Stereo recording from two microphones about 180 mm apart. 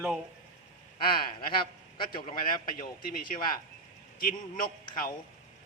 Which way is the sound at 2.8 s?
55° left (ahead or behind).